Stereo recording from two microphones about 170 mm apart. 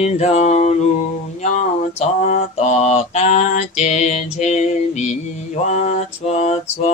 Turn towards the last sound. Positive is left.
turn(degrees=40)  # may be behind; listen again after turning